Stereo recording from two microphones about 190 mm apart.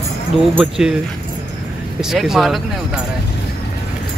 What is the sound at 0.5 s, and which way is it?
Speech, centre (ahead or behind).